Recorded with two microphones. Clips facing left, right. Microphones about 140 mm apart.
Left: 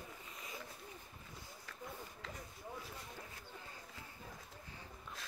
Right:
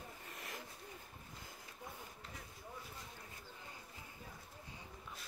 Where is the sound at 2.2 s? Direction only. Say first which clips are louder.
Left 6 dB; 90° left.